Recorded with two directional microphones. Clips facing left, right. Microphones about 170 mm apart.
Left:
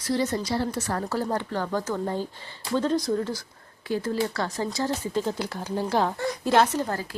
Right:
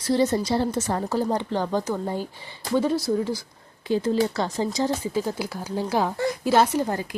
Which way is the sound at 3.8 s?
20° right (ahead or behind).